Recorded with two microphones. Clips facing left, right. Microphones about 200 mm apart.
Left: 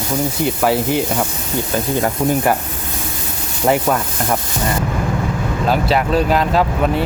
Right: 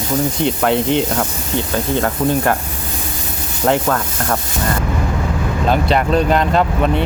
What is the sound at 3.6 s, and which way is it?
Speech, 10° left (ahead or behind).